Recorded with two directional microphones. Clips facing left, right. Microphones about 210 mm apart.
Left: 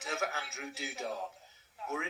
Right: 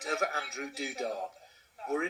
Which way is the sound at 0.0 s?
35° right (ahead or behind).